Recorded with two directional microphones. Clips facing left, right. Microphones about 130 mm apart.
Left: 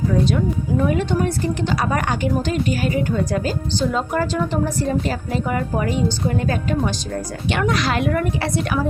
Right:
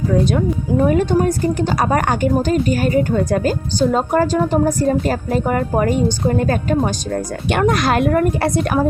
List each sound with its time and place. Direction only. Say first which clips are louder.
0.1 s speech: right 5 dB; 50° right (ahead or behind)